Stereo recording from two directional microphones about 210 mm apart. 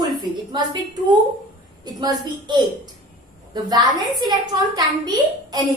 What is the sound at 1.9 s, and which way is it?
A woman's voice, 20° right (ahead or behind).